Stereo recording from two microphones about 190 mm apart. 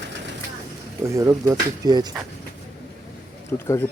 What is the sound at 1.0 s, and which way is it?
Speech, 15° right (ahead or behind).